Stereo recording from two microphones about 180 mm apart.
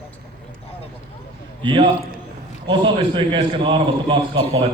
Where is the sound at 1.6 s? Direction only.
25° right (ahead or behind).